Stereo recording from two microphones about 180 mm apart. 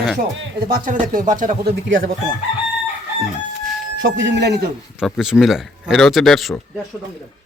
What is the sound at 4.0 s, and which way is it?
Speech, 90° right.